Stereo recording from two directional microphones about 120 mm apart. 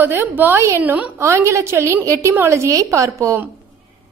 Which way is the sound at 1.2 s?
25° right (ahead or behind).